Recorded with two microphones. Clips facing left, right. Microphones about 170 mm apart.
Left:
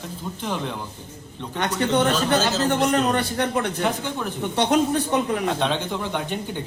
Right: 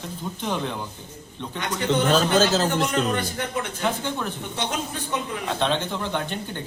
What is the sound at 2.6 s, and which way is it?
A man's voice, 60° left (ahead or behind).